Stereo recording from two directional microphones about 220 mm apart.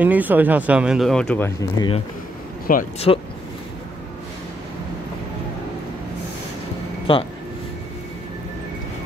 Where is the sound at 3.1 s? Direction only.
25° left (ahead or behind).